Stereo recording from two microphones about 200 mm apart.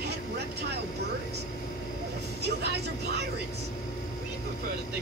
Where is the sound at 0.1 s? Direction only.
55° right (ahead or behind).